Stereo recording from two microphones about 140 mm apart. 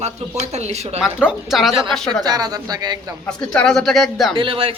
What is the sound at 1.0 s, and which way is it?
Speech, 5° right (ahead or behind).